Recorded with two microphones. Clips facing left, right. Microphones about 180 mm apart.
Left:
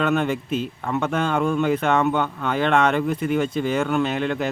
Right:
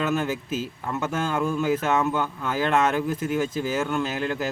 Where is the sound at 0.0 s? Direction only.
60° left (ahead or behind).